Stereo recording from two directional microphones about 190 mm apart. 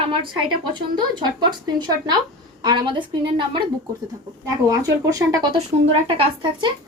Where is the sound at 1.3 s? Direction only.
20° right (ahead or behind).